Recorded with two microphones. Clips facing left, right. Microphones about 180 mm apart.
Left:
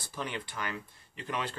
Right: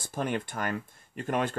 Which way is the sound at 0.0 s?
50° right (ahead or behind).